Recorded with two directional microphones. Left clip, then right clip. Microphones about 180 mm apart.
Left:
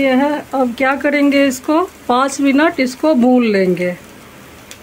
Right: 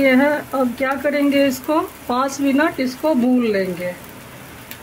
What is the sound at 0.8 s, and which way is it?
Speech, 30° left (ahead or behind).